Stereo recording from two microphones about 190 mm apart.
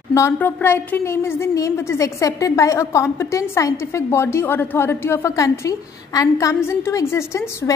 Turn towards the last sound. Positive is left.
turn(degrees=15)  # may be behind; listen again after turning